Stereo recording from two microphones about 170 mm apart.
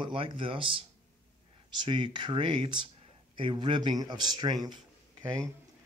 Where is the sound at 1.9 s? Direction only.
25° right (ahead or behind).